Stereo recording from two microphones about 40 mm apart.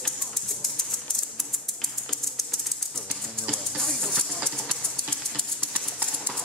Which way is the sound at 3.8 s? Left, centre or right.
Centre.